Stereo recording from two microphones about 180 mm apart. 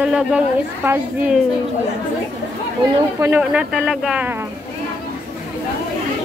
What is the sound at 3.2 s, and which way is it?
Speech, 10° right (ahead or behind).